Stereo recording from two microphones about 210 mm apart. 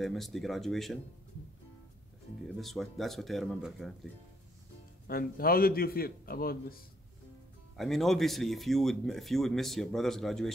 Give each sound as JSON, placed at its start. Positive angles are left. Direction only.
{"t": 0.0, "sound": "a man's voice", "side_deg": 0}
{"t": 2.4, "sound": "a man's voice", "side_deg": 0}
{"t": 5.0, "sound": "a man's voice", "side_deg": 45}
{"t": 7.7, "sound": "a man's voice", "side_deg": 0}